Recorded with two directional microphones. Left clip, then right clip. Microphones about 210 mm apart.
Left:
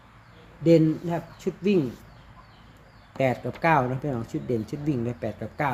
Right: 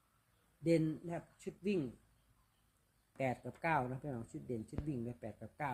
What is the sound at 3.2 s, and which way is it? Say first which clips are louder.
Speech: left 15 dB; 10° right (ahead or behind).